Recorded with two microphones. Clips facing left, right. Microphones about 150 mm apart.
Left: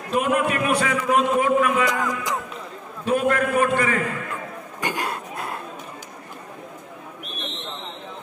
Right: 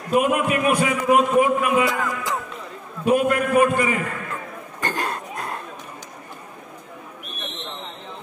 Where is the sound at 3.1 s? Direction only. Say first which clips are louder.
Right 2 dB; 15° right (ahead or behind).